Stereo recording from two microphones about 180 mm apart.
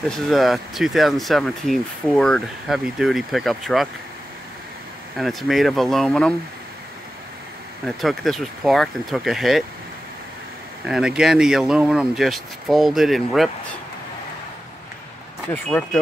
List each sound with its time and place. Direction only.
0.1 s speech: centre (ahead or behind)
5.1 s speech: centre (ahead or behind)
7.8 s speech: centre (ahead or behind)
10.9 s speech: 5° right (ahead or behind)
15.5 s speech: 5° left (ahead or behind)